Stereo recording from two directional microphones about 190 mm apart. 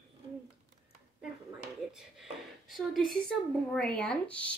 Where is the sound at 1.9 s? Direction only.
Centre (ahead or behind).